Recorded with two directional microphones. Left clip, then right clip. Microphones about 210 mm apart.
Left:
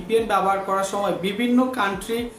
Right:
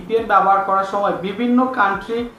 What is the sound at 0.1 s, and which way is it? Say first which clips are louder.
Speech: right 6 dB; 25° left (ahead or behind).